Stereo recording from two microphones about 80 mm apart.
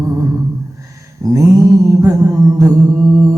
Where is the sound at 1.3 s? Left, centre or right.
Right.